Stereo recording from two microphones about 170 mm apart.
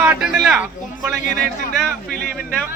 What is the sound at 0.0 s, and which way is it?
A man's voice, 5° right (ahead or behind).